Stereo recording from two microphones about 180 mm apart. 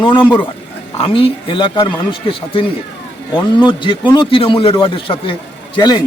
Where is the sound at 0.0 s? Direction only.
25° left (ahead or behind).